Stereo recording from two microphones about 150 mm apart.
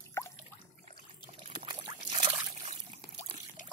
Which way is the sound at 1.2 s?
40° right (ahead or behind).